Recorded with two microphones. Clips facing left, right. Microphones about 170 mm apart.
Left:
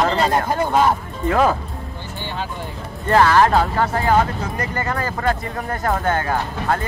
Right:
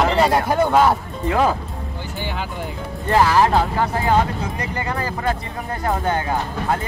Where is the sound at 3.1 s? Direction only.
15° right (ahead or behind).